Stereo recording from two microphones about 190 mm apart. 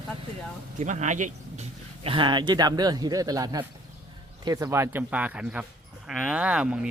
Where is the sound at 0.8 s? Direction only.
40° right (ahead or behind).